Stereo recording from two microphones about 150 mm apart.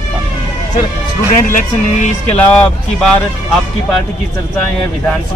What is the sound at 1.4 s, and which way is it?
Speech, 60° left (ahead or behind).